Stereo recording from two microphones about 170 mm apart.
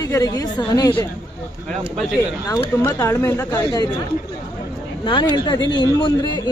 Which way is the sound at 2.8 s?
15° left (ahead or behind).